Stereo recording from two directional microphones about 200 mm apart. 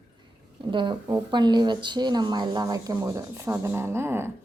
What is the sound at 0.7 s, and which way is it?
A woman's voice, 25° right (ahead or behind).